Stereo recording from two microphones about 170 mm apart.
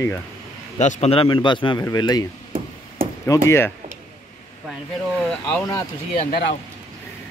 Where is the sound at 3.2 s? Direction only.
15° left (ahead or behind).